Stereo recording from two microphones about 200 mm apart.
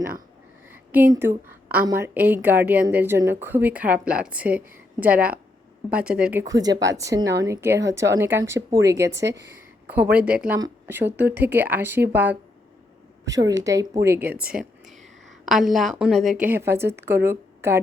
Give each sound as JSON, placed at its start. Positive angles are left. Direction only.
{"t": 0.7, "sound": "a woman's voice", "side_deg": -10}
{"t": 6.5, "sound": "a woman's voice", "side_deg": -20}
{"t": 13.5, "sound": "a woman's voice", "side_deg": -15}
{"t": 14.4, "sound": "a sound", "side_deg": -5}
{"t": 15.4, "sound": "a woman's voice", "side_deg": 0}